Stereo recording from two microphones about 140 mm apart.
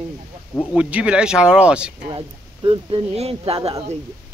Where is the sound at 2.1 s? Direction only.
35° right (ahead or behind).